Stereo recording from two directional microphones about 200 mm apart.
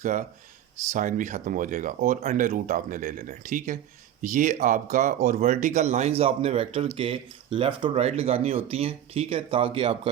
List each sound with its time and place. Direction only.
0.0 s speech: 40° right (ahead or behind)